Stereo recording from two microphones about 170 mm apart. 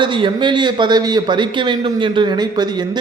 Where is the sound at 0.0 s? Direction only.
30° right (ahead or behind).